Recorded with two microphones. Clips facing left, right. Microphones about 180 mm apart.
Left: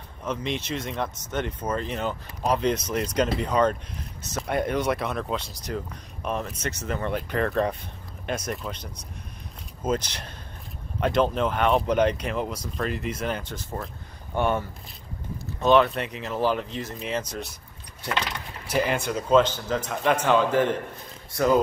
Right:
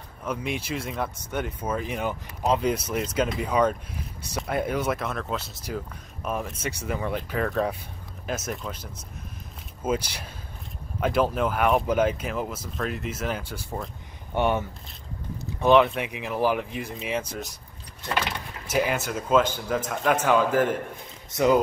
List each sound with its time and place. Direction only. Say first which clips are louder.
0.2 s a man's voice: left 1 dB; 10° right (ahead or behind)
18.7 s a man's voice: even; 5° right (ahead or behind)
21.3 s speech: right 1 dB; 20° right (ahead or behind)